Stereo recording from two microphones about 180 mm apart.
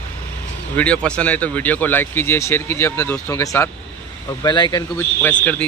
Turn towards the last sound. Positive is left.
turn(degrees=10)  # may be behind; listen again after turning